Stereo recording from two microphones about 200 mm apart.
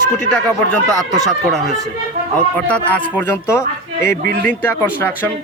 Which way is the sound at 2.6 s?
5° left (ahead or behind).